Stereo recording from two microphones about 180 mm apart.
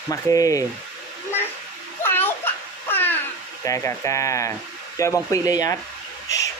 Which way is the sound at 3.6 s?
15° left (ahead or behind).